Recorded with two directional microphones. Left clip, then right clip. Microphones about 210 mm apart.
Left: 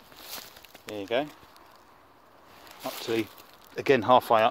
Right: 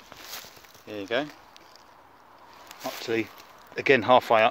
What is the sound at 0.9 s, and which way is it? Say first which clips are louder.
Speech: even; 5° right (ahead or behind).